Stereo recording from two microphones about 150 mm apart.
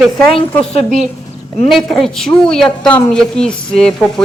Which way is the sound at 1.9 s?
5° left (ahead or behind).